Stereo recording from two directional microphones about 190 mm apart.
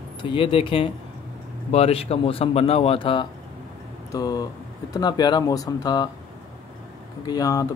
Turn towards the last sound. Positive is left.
turn(degrees=20)  # may be behind; listen again after turning